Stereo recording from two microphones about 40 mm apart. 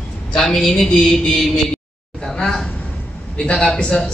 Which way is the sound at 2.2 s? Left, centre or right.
Centre.